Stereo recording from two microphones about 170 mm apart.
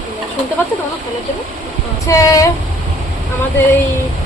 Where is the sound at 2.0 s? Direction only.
20° left (ahead or behind).